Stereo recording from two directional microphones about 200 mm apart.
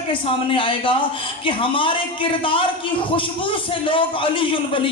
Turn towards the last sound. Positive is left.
turn(degrees=25)  # may be behind; listen again after turning